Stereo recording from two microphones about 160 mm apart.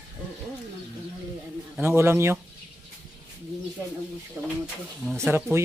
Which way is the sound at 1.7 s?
15° right (ahead or behind).